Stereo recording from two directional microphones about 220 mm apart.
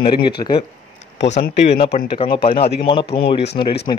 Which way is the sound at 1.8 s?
30° left (ahead or behind).